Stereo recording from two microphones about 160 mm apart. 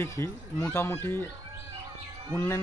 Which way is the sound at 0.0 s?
20° left (ahead or behind).